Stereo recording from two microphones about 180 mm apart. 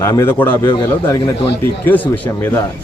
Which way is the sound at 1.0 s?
25° left (ahead or behind).